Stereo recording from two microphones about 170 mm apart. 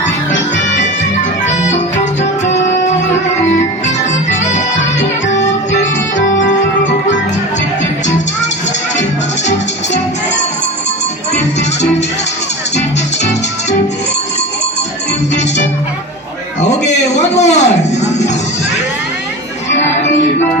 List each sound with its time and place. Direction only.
0.3 s music: 90° left
1.5 s music: 40° left (ahead or behind)
4.3 s music: 45° left (ahead or behind)
4.9 s music: 90° left
5.8 s music: 50° left (ahead or behind)
16.6 s a sound: 40° left (ahead or behind)